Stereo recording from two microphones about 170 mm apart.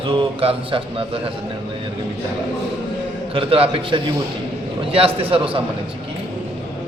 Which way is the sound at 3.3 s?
35° right (ahead or behind).